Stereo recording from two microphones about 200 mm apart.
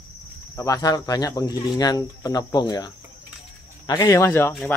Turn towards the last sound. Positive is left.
turn(degrees=10)  # may be behind; listen again after turning